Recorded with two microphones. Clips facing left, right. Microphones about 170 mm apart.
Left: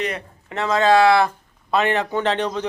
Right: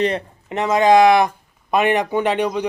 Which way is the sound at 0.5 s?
15° right (ahead or behind).